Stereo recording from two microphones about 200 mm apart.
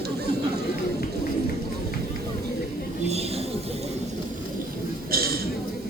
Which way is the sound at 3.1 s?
30° right (ahead or behind).